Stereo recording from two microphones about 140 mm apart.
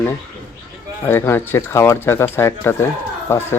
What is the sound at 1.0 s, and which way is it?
Speech, 15° left (ahead or behind).